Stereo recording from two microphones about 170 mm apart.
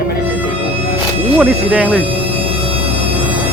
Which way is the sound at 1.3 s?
10° right (ahead or behind).